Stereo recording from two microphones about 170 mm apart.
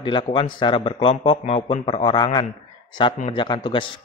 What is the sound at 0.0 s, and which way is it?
Speech, 30° left (ahead or behind).